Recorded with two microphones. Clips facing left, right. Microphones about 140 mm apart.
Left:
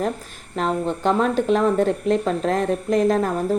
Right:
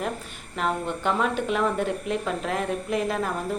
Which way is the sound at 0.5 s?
35° left (ahead or behind).